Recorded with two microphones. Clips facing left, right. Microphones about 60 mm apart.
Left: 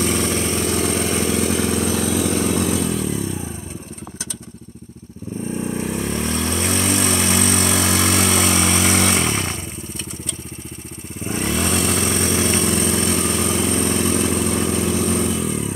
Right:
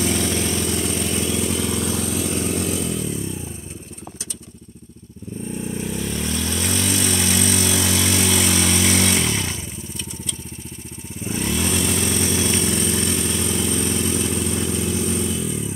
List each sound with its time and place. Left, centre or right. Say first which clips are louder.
0.2 s vehicle: left 2 dB; left
0.7 s vehicle: left 3 dB; left
5.6 s vehicle: left 3 dB; left
11.2 s vehicle: left 2 dB; left